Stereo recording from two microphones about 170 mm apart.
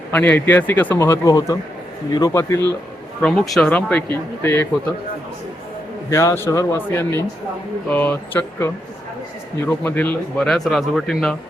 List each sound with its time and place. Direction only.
0.1 s speech: 10° left (ahead or behind)
3.2 s speech: 5° left (ahead or behind)
6.1 s speech: 15° left (ahead or behind); by 11.3 s centre (ahead or behind)